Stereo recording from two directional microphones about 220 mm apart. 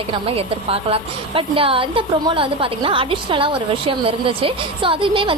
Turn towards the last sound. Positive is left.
turn(degrees=-25)  # may be behind; listen again after turning